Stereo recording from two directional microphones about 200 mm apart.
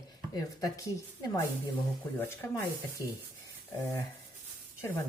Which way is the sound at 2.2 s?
10° left (ahead or behind).